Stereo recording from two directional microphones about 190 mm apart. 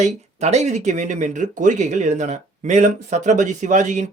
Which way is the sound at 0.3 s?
35° right (ahead or behind).